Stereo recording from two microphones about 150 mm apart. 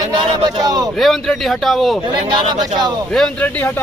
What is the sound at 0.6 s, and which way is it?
Speech, 25° right (ahead or behind).